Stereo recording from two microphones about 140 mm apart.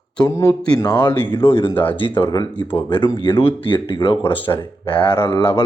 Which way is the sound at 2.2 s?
25° left (ahead or behind).